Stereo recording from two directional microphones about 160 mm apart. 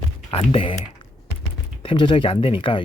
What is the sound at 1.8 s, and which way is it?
Speech, 30° left (ahead or behind).